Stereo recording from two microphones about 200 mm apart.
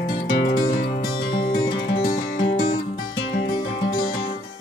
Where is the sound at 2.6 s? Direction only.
25° left (ahead or behind).